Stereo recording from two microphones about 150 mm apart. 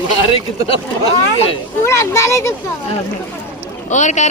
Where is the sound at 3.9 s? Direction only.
55° left (ahead or behind).